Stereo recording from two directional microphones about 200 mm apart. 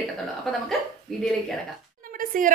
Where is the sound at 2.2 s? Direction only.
45° right (ahead or behind).